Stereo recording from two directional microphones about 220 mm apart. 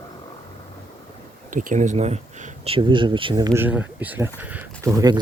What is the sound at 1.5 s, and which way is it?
Speech, 35° right (ahead or behind).